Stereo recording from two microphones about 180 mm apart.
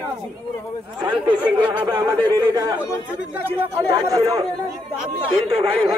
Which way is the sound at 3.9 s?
20° right (ahead or behind).